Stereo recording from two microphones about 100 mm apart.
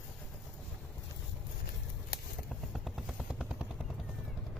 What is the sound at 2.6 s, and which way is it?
Vehicle, centre (ahead or behind).